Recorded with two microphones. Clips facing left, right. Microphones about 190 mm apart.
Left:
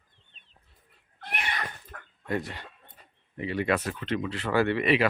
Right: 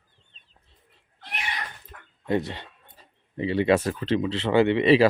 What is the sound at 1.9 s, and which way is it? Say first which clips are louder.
Dog: left 2 dB; 50° left (ahead or behind).